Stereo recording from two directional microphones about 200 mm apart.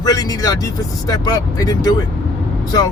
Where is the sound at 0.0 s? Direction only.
20° left (ahead or behind).